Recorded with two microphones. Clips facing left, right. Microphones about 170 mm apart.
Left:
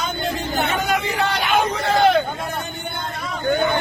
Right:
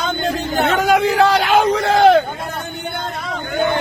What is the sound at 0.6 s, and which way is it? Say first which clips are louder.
Hubbub: right 9 dB; 90° right.